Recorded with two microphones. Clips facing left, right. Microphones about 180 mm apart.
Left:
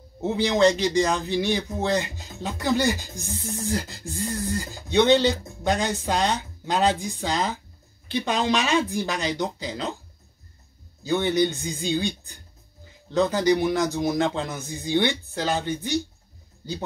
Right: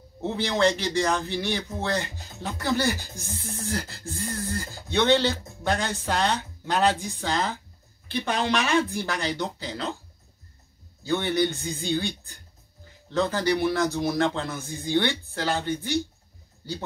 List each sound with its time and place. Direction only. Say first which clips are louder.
0.2 s a man's voice: left 4 dB; 20° left (ahead or behind)
11.1 s a man's voice: left 2 dB; 15° left (ahead or behind)